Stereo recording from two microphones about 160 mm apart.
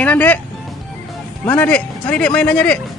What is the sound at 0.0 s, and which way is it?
Speech, 10° left (ahead or behind).